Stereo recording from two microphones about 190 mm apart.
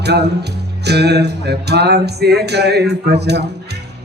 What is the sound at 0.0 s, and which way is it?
Music, 60° right (ahead or behind).